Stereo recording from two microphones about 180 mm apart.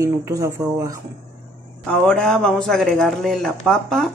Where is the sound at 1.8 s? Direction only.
5° left (ahead or behind).